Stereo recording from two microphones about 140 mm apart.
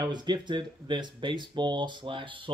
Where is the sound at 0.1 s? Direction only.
30° right (ahead or behind).